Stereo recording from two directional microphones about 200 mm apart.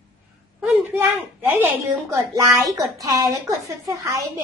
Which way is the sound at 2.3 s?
15° right (ahead or behind).